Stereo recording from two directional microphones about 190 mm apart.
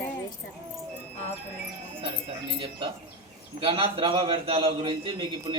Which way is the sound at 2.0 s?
25° right (ahead or behind).